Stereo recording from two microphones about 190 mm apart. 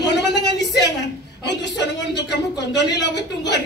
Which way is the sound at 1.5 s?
65° left (ahead or behind).